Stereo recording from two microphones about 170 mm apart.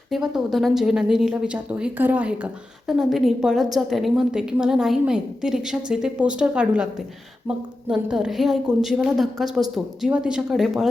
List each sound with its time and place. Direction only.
0.1 s speech: centre (ahead or behind)